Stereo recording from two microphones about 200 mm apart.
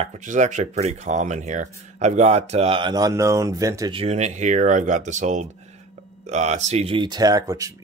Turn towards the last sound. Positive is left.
turn(degrees=-15)  # may be behind; listen again after turning